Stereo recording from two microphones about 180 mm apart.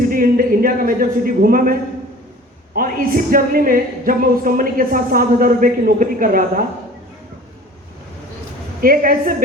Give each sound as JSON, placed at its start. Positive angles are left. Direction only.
{"t": 0.0, "sound": "a man's voice", "side_deg": -50}
{"t": 8.8, "sound": "speech", "side_deg": -55}